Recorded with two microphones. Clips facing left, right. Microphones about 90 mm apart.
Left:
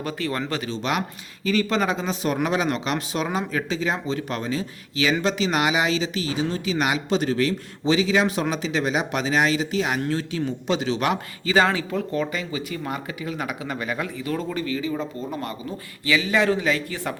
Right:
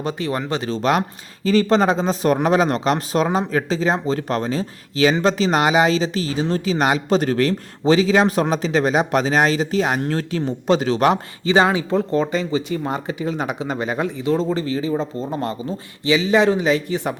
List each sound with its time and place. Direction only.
0.0 s speech: 20° right (ahead or behind)
0.6 s speech: 40° right (ahead or behind)
11.4 s speech: 20° right (ahead or behind)
11.9 s speech: 30° right (ahead or behind)